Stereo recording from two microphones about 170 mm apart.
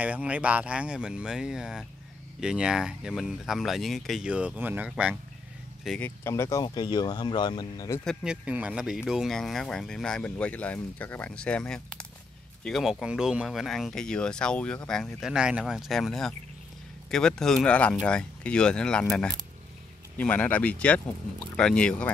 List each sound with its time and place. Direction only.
0.0 s speech: 10° right (ahead or behind)
5.9 s speech: 10° left (ahead or behind)
8.0 s speech: centre (ahead or behind)